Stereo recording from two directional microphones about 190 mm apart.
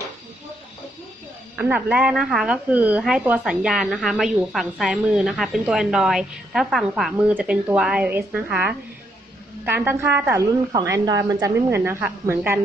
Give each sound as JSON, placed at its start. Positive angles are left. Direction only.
{"t": 1.6, "sound": "a woman's voice", "side_deg": -5}